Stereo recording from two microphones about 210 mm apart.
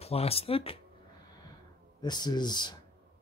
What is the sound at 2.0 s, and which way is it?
Speech, 20° left (ahead or behind).